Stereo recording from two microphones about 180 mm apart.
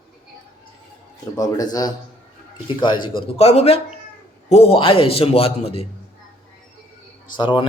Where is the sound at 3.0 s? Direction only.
30° left (ahead or behind).